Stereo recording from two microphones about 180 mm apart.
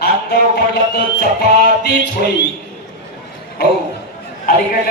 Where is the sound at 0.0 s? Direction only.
65° left (ahead or behind).